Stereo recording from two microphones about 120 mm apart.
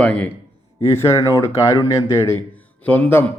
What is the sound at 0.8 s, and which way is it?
Speech, 20° left (ahead or behind).